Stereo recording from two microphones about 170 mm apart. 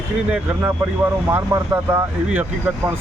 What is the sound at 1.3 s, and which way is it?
Speech, 15° right (ahead or behind).